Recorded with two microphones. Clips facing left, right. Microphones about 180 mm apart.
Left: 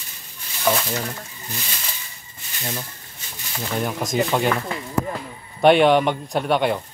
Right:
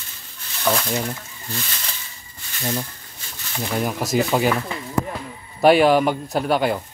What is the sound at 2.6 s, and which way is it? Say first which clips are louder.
Speech: right 5 dB; 15° right (ahead or behind).